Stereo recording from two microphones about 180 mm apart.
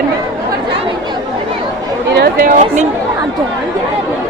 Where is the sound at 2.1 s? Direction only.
70° right (ahead or behind).